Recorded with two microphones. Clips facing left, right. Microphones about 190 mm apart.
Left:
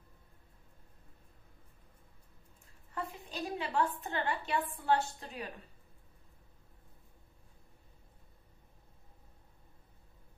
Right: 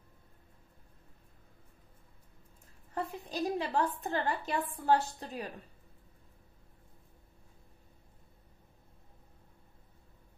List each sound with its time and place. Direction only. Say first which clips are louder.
2.9 s a woman's voice: right 4 dB; 40° right (ahead or behind)